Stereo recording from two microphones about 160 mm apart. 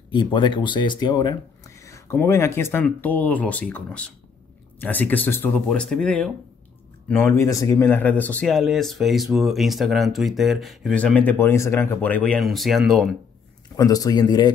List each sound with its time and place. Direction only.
0.1 s speech: 30° left (ahead or behind); by 13.1 s centre (ahead or behind)
13.7 s speech: 20° left (ahead or behind)